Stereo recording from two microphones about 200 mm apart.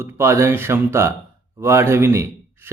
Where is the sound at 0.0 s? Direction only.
15° right (ahead or behind).